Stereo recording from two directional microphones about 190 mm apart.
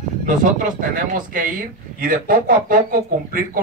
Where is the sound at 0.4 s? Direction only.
45° right (ahead or behind).